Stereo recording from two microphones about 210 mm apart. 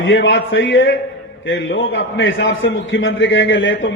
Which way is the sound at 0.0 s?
60° left (ahead or behind).